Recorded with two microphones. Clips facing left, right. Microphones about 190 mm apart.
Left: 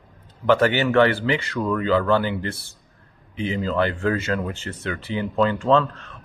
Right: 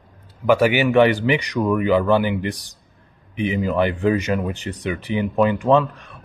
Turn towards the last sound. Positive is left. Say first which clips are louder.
# right 2 dB
turn(degrees=-15)  # may be behind; listen again after turning